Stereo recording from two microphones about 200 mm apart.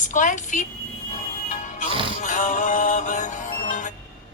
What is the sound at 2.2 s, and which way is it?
Music, 40° left (ahead or behind).